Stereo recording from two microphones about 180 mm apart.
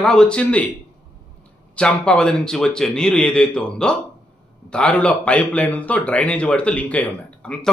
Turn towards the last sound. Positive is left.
turn(degrees=5)  # may be behind; listen again after turning